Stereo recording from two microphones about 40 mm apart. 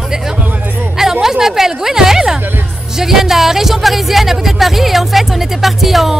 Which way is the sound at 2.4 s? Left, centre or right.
Right.